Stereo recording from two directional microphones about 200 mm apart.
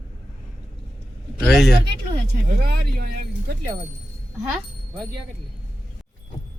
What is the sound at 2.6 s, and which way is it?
Speech, 50° right (ahead or behind).